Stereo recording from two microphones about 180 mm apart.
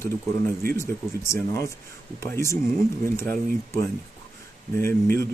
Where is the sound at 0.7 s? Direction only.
15° left (ahead or behind).